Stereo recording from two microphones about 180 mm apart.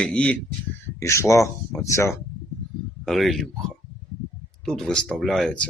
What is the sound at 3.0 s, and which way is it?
Speech, centre (ahead or behind).